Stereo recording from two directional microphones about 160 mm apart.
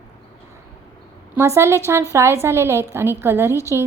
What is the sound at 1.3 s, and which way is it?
A woman's voice, 15° right (ahead or behind).